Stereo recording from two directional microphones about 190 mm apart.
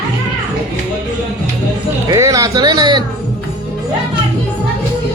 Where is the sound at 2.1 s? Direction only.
15° right (ahead or behind).